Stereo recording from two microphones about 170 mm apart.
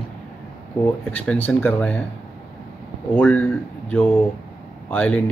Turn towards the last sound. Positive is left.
turn(degrees=10)  # may be behind; listen again after turning